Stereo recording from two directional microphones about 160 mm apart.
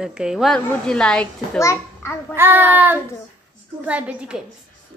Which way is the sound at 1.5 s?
15° left (ahead or behind).